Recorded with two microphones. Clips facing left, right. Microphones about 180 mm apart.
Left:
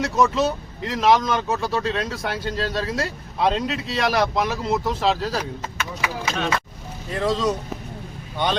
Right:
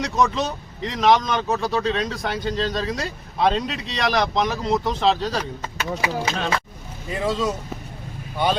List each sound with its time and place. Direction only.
0.0 s speech: 5° left (ahead or behind)
5.7 s speech: 35° right (ahead or behind)
7.1 s speech: 5° right (ahead or behind)